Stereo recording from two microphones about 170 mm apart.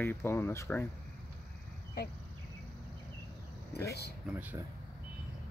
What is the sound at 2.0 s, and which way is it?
Speech, 65° left (ahead or behind).